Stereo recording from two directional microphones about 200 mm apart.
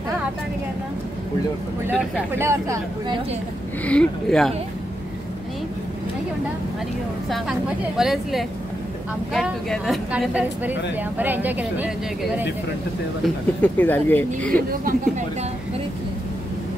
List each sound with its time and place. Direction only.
1.9 s speech: 10° right (ahead or behind)
3.8 s a woman's voice: 5° left (ahead or behind)
7.2 s a woman's voice: centre (ahead or behind)
13.2 s speech: 10° left (ahead or behind)
14.7 s speech: 45° right (ahead or behind)